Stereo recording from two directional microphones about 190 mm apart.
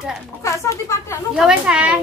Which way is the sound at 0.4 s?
15° left (ahead or behind).